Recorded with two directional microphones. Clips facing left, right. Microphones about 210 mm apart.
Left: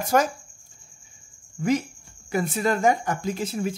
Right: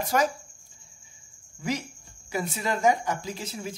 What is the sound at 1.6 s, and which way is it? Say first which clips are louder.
Speech: left 7 dB; 55° left (ahead or behind).